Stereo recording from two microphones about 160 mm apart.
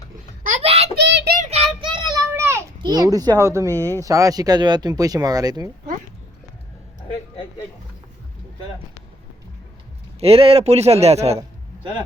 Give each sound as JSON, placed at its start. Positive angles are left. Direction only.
{"t": 0.6, "sound": "child singing", "side_deg": -40}
{"t": 0.9, "sound": "child singing", "side_deg": -90}
{"t": 1.4, "sound": "child singing", "side_deg": -40}
{"t": 2.3, "sound": "children playing", "side_deg": -15}
{"t": 2.8, "sound": "speech", "side_deg": -25}
{"t": 10.2, "sound": "a man's voice", "side_deg": -40}
{"t": 11.3, "sound": "a sound", "side_deg": -30}